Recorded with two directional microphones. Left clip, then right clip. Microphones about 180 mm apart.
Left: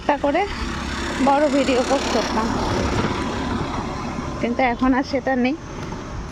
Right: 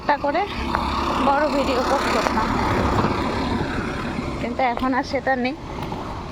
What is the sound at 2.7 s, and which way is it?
Vehicle, 5° right (ahead or behind).